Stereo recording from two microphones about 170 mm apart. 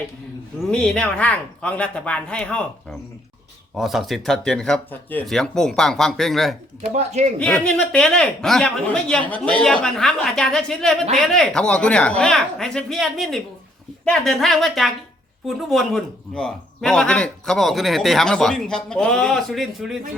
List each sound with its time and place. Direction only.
0.7 s a man's voice: 5° left (ahead or behind)
6.9 s speech: 40° right (ahead or behind)
7.3 s a man's voice: 5° left (ahead or behind)